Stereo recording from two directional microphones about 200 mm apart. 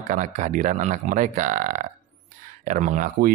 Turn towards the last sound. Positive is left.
turn(degrees=-40)  # may be behind; listen again after turning